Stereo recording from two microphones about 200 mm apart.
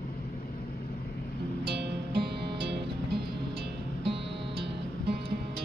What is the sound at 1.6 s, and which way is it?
Music, 55° right (ahead or behind).